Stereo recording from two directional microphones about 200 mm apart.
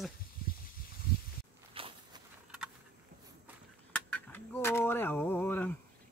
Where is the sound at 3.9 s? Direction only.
5° left (ahead or behind).